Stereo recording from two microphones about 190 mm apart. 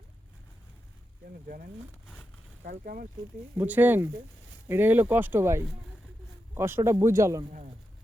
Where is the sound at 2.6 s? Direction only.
45° right (ahead or behind).